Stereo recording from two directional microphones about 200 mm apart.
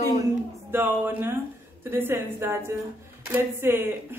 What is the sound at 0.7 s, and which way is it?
Speech, 10° right (ahead or behind).